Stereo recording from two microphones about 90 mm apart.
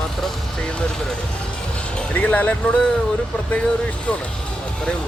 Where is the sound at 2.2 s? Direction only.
15° left (ahead or behind).